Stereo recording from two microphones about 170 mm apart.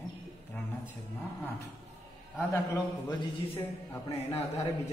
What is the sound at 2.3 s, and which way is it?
A man's voice, 10° left (ahead or behind).